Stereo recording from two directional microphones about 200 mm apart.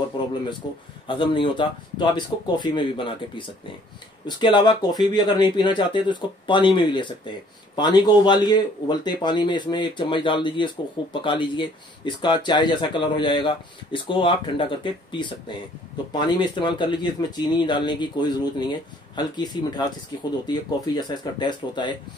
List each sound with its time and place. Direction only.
0.6 s speech: 20° left (ahead or behind)